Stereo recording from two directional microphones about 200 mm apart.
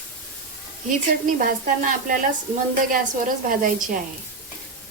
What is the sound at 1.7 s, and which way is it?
Sizzle, 45° right (ahead or behind).